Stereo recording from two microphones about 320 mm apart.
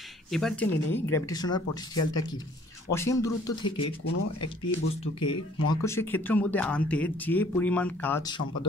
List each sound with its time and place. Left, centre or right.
0.3 s speech: centre
2.9 s speech: centre
4.0 s speech: left
5.2 s speech: centre